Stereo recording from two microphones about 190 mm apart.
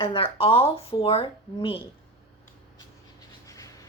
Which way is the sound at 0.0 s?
30° left (ahead or behind).